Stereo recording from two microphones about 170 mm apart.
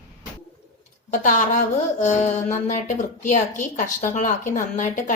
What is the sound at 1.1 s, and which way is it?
A woman's voice, 50° left (ahead or behind).